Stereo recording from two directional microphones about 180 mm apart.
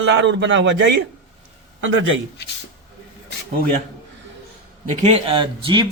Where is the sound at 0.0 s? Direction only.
85° right.